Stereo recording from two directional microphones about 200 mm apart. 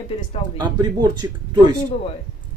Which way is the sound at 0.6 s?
20° right (ahead or behind).